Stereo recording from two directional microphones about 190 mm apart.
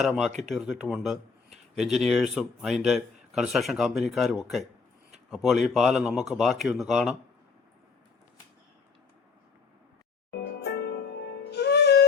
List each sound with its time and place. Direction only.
0.0 s speech: centre (ahead or behind)
10.3 s music: 60° left (ahead or behind)